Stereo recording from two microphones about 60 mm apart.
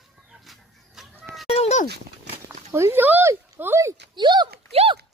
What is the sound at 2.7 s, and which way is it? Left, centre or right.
Speech, right.